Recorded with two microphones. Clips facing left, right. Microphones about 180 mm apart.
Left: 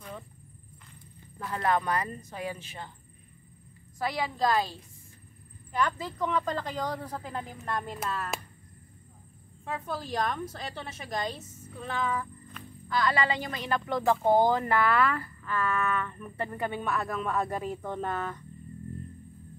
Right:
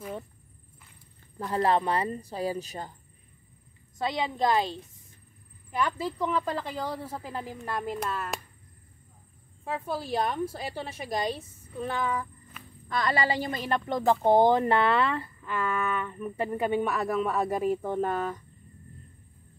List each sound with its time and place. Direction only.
1.4 s a woman's voice: 30° right (ahead or behind)
4.0 s speech: 20° right (ahead or behind)
5.7 s speech: 10° right (ahead or behind)
9.7 s speech: 10° right (ahead or behind)